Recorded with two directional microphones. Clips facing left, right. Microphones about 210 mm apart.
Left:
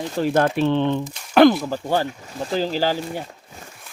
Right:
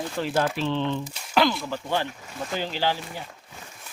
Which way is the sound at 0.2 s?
50° left (ahead or behind).